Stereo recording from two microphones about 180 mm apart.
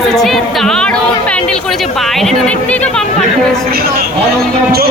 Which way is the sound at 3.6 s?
60° right (ahead or behind).